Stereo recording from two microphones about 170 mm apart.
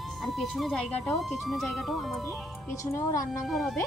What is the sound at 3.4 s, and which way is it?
Speech, centre (ahead or behind).